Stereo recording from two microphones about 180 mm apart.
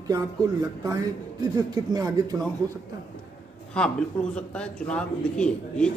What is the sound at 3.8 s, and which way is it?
A man's voice, 5° left (ahead or behind).